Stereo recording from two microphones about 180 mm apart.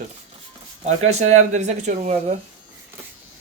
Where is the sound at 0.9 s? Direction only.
40° right (ahead or behind).